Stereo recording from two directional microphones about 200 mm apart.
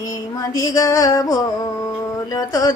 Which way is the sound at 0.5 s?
15° left (ahead or behind).